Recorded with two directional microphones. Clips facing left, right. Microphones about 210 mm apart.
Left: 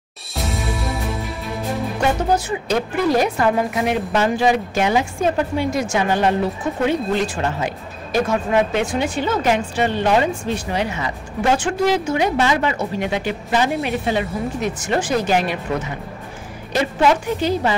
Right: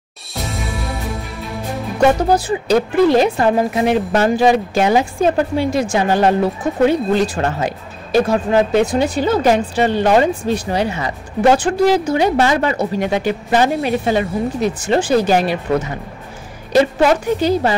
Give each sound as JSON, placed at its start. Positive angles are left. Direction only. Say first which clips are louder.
{"t": 0.3, "sound": "music", "louder": "even", "side_deg": 0}
{"t": 2.3, "sound": "speech", "louder": "right 5 dB", "side_deg": -35}
{"t": 16.7, "sound": "speech", "louder": "right 5 dB", "side_deg": -40}